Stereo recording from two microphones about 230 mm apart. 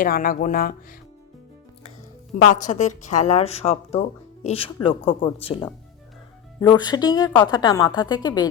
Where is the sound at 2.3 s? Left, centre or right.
Left.